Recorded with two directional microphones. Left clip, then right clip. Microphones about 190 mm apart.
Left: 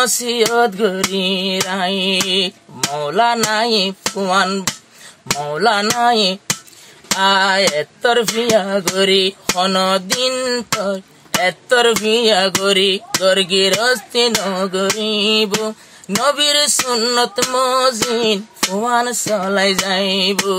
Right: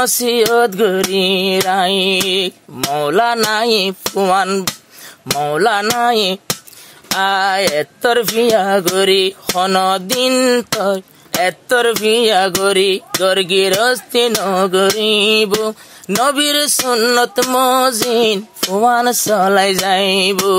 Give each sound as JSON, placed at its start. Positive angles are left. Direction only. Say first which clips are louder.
{"t": 0.0, "sound": "music", "louder": "right 2 dB", "side_deg": -45}